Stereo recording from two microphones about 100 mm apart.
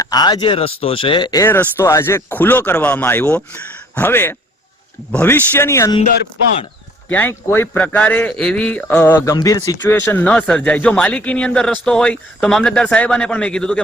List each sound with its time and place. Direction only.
0.0 s speech: 40° left (ahead or behind); by 1.3 s 60° left (ahead or behind)
1.5 s speech: 20° left (ahead or behind)
7.1 s speech: 20° left (ahead or behind)
7.8 s speech: 10° left (ahead or behind)
9.2 s speech: 35° left (ahead or behind); by 13.8 s 5° left (ahead or behind)